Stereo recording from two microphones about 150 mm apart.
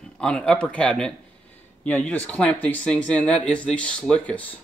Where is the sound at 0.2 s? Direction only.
5° left (ahead or behind).